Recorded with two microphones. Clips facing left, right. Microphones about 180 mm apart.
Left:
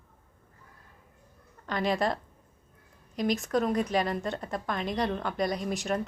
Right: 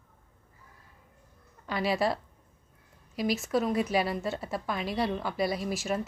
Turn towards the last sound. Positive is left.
turn(degrees=-5)  # may be behind; listen again after turning